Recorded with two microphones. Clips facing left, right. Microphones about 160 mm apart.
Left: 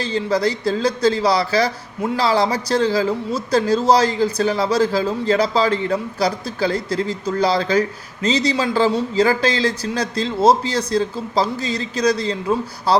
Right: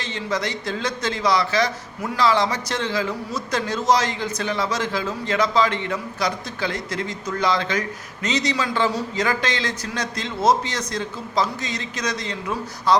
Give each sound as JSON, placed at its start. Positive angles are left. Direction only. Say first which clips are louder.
{"t": 0.0, "sound": "speech", "louder": "left 7 dB", "side_deg": 35}